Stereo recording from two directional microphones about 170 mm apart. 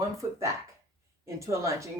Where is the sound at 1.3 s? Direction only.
15° right (ahead or behind).